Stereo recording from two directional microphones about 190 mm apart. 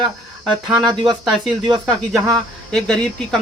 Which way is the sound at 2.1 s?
5° left (ahead or behind).